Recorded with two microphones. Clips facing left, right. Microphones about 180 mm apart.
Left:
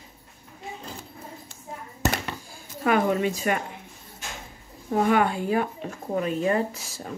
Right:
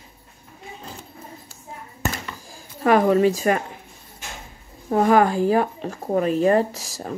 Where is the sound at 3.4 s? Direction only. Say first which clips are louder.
Right 5 dB; 40° right (ahead or behind).